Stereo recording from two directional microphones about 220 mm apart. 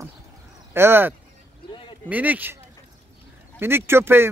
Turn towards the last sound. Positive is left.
turn(degrees=-10)  # may be behind; listen again after turning